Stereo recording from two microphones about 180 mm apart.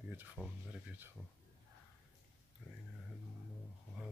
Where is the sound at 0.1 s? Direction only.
10° right (ahead or behind).